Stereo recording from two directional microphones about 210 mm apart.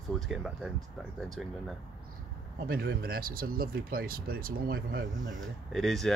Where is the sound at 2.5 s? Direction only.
45° right (ahead or behind).